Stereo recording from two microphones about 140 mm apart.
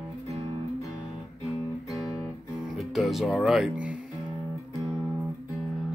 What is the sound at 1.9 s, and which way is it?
Music, 25° left (ahead or behind).